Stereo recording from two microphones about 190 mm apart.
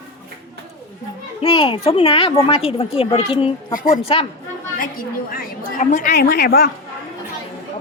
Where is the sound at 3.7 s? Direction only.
45° left (ahead or behind).